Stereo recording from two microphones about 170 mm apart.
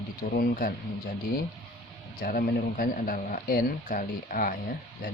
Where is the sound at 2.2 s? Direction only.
60° left (ahead or behind).